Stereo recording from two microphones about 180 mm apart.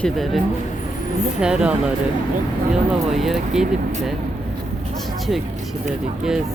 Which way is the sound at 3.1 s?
Centre (ahead or behind).